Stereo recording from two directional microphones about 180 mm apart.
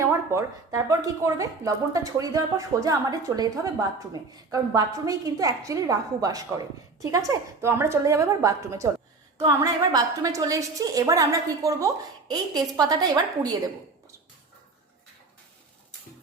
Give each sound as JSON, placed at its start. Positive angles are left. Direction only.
{"t": 0.0, "sound": "a woman's voice", "side_deg": -15}
{"t": 9.9, "sound": "a woman's voice", "side_deg": -20}